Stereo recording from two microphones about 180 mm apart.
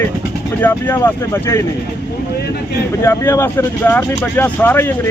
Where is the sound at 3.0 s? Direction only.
15° left (ahead or behind).